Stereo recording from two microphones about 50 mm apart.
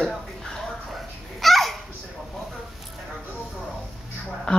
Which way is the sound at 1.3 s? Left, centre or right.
Centre.